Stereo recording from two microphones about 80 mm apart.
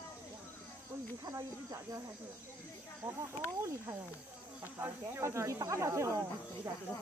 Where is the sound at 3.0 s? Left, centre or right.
Right.